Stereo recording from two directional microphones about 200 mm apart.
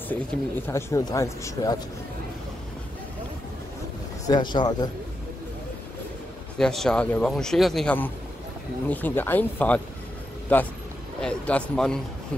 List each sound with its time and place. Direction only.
0.1 s speech: 10° left (ahead or behind)
4.3 s speech: 20° left (ahead or behind)
6.6 s a man's voice: centre (ahead or behind)